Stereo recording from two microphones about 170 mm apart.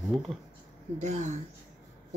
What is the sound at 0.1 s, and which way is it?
Speech, centre (ahead or behind).